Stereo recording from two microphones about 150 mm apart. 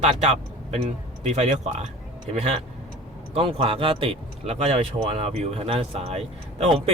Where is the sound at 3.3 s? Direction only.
40° right (ahead or behind).